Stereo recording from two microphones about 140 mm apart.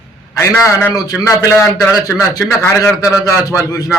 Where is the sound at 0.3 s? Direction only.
20° left (ahead or behind).